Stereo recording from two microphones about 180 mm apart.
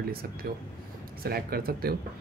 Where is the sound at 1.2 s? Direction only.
55° right (ahead or behind).